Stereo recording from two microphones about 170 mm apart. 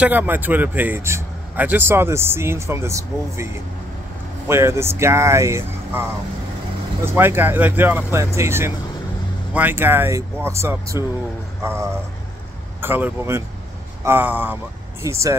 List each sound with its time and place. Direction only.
0.0 s speech: 10° right (ahead or behind)
4.5 s speech: 15° right (ahead or behind)
7.1 s speech: 15° right (ahead or behind)